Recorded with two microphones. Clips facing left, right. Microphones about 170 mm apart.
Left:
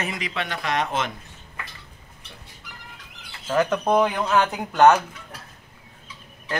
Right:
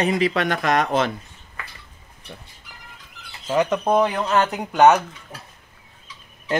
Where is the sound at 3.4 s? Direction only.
10° right (ahead or behind).